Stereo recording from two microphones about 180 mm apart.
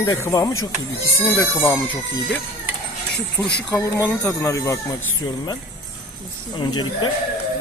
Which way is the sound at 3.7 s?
10° left (ahead or behind).